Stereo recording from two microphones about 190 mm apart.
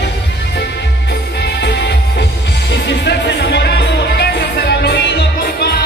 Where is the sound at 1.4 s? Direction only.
60° left (ahead or behind).